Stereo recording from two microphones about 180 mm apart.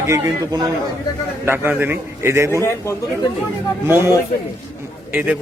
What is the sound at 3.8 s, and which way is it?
Speech, 10° right (ahead or behind).